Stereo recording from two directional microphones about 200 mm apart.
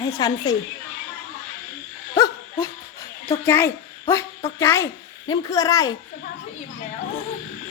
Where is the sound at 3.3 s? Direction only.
10° left (ahead or behind).